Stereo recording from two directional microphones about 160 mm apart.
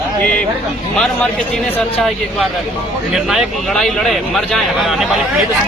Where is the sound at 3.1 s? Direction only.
Centre (ahead or behind).